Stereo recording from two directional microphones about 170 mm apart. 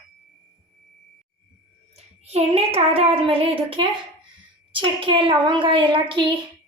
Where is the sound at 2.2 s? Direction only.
35° right (ahead or behind).